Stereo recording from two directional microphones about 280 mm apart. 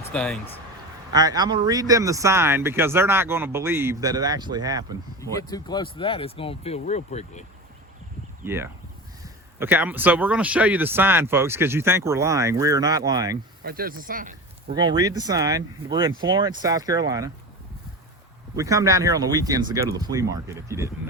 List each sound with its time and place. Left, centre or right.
0.1 s speech: centre
1.1 s speech: centre
5.4 s speech: centre
8.4 s speech: centre
13.7 s speech: right
14.7 s speech: centre
18.5 s speech: centre